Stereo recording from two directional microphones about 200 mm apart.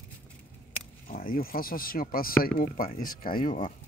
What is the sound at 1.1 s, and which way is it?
Speech, 45° left (ahead or behind).